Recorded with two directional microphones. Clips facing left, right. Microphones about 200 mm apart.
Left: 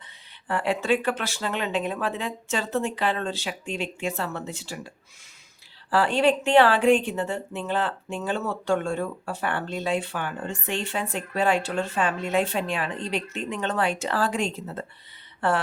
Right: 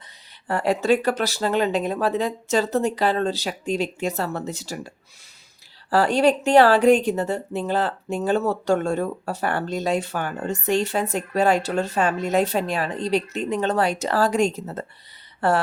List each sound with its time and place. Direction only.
0.4 s a woman's voice: 40° right (ahead or behind)
5.9 s a woman's voice: 40° right (ahead or behind)